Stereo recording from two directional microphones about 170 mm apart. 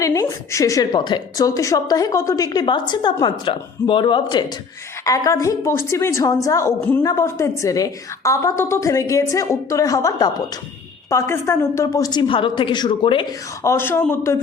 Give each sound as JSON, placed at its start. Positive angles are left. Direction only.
{"t": 0.0, "sound": "a woman's voice", "side_deg": 20}
{"t": 13.6, "sound": "a woman's voice", "side_deg": 15}